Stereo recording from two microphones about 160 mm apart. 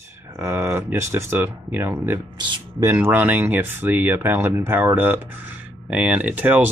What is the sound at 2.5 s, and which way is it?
Speech, 25° right (ahead or behind).